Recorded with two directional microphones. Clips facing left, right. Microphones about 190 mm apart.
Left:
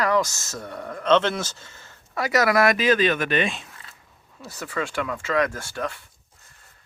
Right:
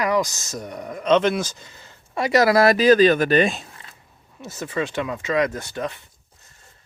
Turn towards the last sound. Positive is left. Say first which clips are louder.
# right 2 dB
turn(degrees=-20)  # may be behind; listen again after turning